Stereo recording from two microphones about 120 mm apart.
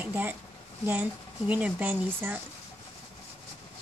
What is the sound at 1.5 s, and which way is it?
Speech, 15° right (ahead or behind).